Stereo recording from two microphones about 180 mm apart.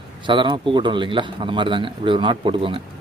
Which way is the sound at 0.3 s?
25° right (ahead or behind).